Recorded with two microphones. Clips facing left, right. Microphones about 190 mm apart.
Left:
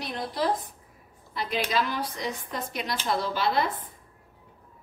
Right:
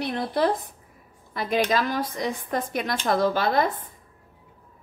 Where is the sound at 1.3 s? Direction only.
50° right (ahead or behind).